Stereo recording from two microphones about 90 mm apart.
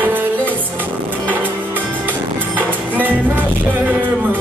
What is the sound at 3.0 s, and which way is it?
Music, 20° right (ahead or behind).